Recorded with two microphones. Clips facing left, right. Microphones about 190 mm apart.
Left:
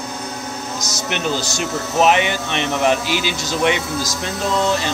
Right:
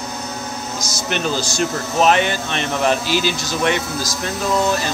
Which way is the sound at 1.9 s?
15° left (ahead or behind).